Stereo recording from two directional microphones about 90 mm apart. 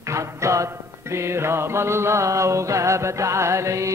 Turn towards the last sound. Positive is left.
turn(degrees=-35)  # may be behind; listen again after turning